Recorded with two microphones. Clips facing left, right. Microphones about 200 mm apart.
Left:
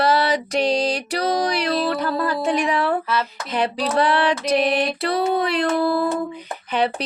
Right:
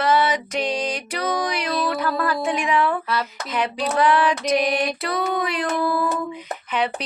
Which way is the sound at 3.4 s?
30° left (ahead or behind).